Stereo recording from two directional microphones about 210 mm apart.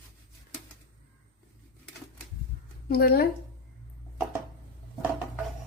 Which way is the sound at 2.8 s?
45° left (ahead or behind).